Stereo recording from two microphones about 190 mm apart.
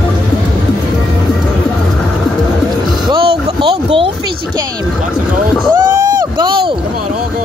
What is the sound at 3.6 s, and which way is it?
Boat, 30° right (ahead or behind).